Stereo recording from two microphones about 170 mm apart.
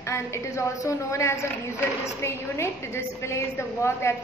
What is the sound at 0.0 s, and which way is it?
A woman's voice, 15° left (ahead or behind).